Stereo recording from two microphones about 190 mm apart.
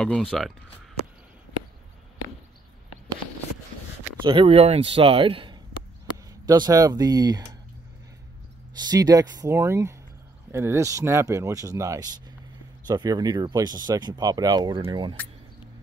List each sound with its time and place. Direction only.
0.0 s speech: centre (ahead or behind)
4.2 s speech: 25° right (ahead or behind)
8.7 s speech: 20° right (ahead or behind)